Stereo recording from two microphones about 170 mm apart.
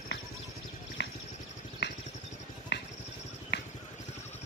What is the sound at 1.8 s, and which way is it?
Vehicle, 90° left.